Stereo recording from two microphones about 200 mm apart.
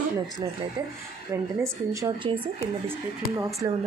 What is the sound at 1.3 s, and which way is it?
Speech, 15° right (ahead or behind).